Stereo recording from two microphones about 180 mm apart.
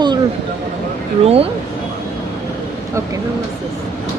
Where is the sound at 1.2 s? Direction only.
35° right (ahead or behind).